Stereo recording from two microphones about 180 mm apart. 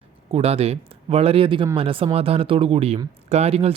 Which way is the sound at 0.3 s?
35° right (ahead or behind).